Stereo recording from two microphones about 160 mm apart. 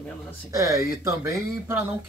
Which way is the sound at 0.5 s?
20° right (ahead or behind).